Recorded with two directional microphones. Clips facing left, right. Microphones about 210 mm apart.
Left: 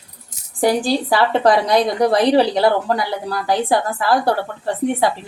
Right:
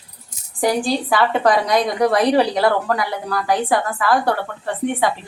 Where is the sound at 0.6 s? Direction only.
35° left (ahead or behind).